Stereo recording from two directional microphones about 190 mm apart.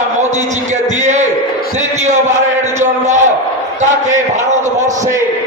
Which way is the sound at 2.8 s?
40° right (ahead or behind).